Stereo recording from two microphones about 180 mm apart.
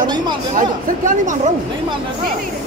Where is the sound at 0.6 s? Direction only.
45° right (ahead or behind).